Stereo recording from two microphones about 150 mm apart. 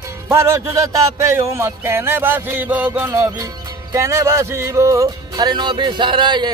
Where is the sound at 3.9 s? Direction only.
20° right (ahead or behind).